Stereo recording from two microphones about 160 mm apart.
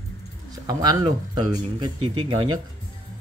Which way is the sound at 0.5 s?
25° right (ahead or behind).